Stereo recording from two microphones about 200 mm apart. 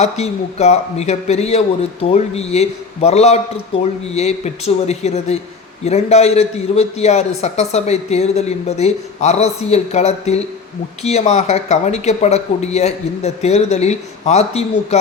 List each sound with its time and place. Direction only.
0.0 s a man's voice: 35° left (ahead or behind)